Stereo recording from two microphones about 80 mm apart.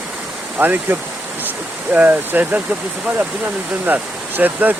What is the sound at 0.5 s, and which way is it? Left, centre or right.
Speech, right.